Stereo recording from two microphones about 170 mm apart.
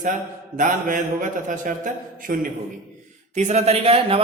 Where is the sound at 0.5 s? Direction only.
50° right (ahead or behind).